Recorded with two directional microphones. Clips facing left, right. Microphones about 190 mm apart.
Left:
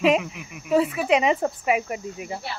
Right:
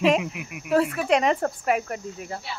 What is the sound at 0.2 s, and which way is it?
Speech, 15° right (ahead or behind).